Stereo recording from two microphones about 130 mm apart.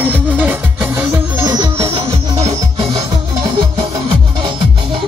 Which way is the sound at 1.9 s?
55° right (ahead or behind).